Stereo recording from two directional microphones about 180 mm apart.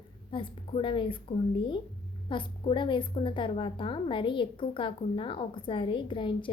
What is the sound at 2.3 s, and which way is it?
A woman's voice, 25° left (ahead or behind).